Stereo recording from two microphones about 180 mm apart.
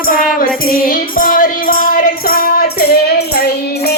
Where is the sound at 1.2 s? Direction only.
50° left (ahead or behind).